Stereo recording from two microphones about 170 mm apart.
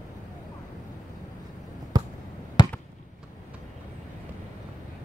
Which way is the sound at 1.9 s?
25° right (ahead or behind).